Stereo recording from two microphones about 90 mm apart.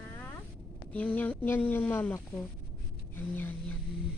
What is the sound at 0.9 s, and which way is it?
Speech, 15° left (ahead or behind).